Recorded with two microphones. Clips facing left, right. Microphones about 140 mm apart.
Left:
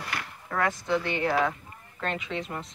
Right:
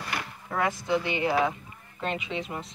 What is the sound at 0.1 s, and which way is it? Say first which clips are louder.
Speech: right 1 dB; 15° right (ahead or behind).